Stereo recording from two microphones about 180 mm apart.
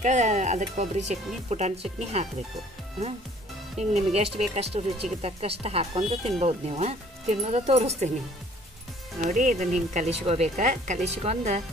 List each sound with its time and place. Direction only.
0.0 s speech: 40° right (ahead or behind)
3.7 s speech: 35° right (ahead or behind)
9.2 s speech: 45° right (ahead or behind)